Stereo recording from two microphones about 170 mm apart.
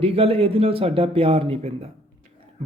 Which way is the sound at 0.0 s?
35° right (ahead or behind).